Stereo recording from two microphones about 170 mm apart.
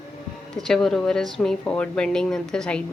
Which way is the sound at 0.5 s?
Centre (ahead or behind).